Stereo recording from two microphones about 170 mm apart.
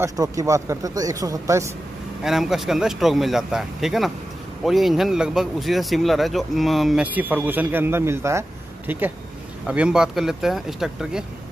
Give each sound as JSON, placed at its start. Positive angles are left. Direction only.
{"t": 0.0, "sound": "speech", "side_deg": -20}
{"t": 2.2, "sound": "speech", "side_deg": 0}